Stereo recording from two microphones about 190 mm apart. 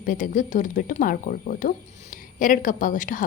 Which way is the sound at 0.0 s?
45° left (ahead or behind).